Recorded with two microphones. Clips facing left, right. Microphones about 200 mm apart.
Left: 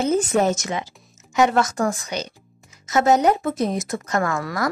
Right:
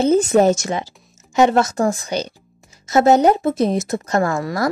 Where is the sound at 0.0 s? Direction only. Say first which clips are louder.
Right 5 dB; 30° right (ahead or behind).